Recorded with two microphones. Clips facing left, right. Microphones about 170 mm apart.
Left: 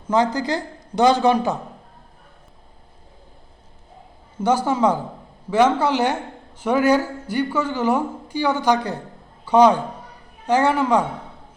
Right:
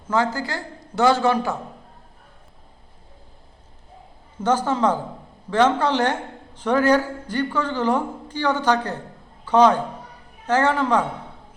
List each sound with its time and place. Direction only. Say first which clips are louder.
0.1 s speech: left 3 dB; 20° left (ahead or behind)
4.4 s a man's voice: left 2 dB; 10° left (ahead or behind)